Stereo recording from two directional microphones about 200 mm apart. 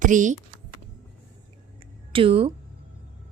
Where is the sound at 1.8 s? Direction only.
25° right (ahead or behind).